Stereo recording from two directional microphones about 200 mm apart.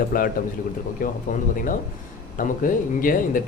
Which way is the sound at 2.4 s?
45° left (ahead or behind).